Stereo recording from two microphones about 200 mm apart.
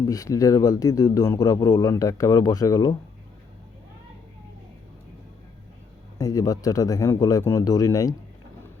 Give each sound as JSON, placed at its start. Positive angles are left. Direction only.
{"t": 0.0, "sound": "a man's voice", "side_deg": 15}
{"t": 6.1, "sound": "a man's voice", "side_deg": 15}